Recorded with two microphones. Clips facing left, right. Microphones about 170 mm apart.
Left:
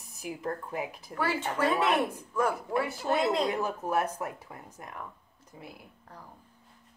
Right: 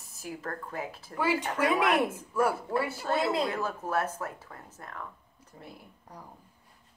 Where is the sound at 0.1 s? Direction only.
15° left (ahead or behind).